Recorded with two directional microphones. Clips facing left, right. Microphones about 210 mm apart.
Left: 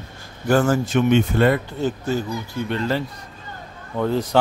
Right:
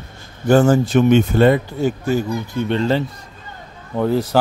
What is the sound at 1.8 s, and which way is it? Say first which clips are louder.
Speech: right 4 dB; 10° right (ahead or behind).